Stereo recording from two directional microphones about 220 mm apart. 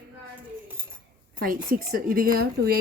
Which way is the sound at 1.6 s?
40° right (ahead or behind).